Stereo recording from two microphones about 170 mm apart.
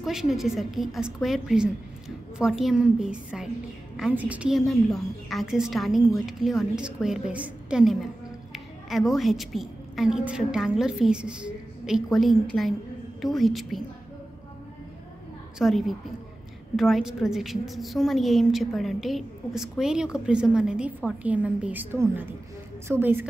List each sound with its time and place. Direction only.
0.0 s a woman's voice: centre (ahead or behind)
15.6 s a woman's voice: centre (ahead or behind)